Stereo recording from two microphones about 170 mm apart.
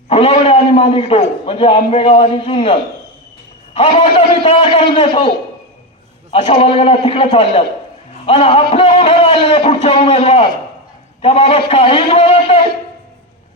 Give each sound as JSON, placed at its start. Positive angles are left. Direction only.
{"t": 0.1, "sound": "a man's voice", "side_deg": 35}
{"t": 6.3, "sound": "a man's voice", "side_deg": 35}